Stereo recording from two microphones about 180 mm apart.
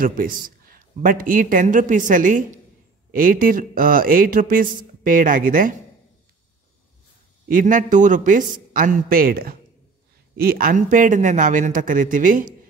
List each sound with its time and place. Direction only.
0.0 s speech: 50° right (ahead or behind)
7.4 s speech: 50° right (ahead or behind)